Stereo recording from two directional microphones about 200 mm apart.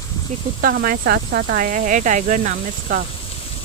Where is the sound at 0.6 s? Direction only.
45° right (ahead or behind).